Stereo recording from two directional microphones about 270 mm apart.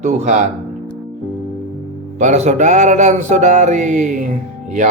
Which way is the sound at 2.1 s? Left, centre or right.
Right.